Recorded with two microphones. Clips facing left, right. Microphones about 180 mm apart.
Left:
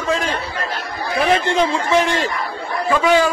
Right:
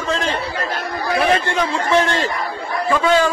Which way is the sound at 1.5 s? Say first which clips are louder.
Left 1 dB; 20° left (ahead or behind).